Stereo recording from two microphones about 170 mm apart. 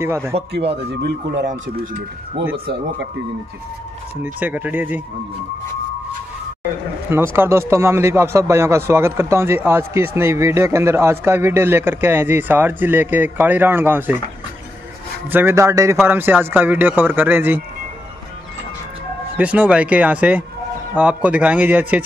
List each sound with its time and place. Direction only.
0.0 s speech: 15° right (ahead or behind)
4.2 s speech: 10° right (ahead or behind)
7.1 s speech: 15° right (ahead or behind)
15.2 s speech: 10° right (ahead or behind)
19.3 s speech: 10° right (ahead or behind)